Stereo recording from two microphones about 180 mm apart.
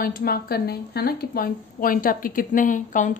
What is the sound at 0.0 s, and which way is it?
Speech, 55° left (ahead or behind).